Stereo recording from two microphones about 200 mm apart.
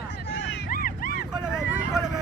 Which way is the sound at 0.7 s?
45° left (ahead or behind).